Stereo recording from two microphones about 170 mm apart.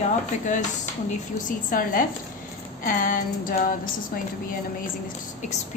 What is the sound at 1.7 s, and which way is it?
A woman's voice, 55° left (ahead or behind).